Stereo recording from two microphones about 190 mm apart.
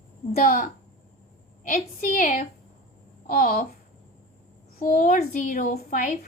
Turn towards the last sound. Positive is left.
turn(degrees=45)  # may be behind; listen again after turning